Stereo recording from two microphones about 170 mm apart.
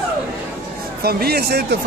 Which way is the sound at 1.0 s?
65° right (ahead or behind).